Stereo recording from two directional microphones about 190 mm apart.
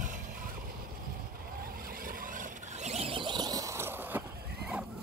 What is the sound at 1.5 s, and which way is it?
Vehicle, 50° right (ahead or behind).